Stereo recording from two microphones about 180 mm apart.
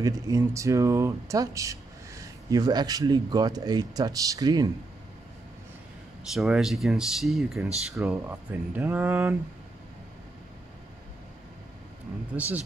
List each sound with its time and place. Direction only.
0.0 s speech: 20° right (ahead or behind)
6.3 s speech: centre (ahead or behind)
12.4 s speech: 10° right (ahead or behind)